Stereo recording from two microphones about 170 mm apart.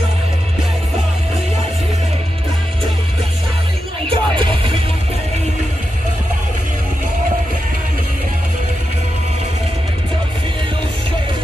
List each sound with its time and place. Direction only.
4.1 s music: 30° right (ahead or behind)